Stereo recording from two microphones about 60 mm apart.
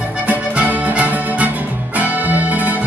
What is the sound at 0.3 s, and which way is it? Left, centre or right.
Music, right.